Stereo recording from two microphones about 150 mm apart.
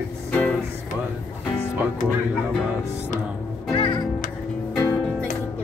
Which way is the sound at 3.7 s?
35° left (ahead or behind).